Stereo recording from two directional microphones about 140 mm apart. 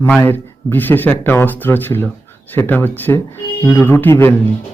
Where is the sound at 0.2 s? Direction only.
15° left (ahead or behind).